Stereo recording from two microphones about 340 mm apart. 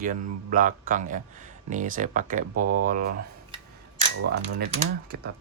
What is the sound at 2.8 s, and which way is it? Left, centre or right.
Speech, right.